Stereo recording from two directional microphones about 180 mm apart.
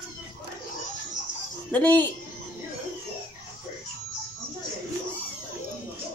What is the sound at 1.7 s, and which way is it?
Speech, 10° left (ahead or behind).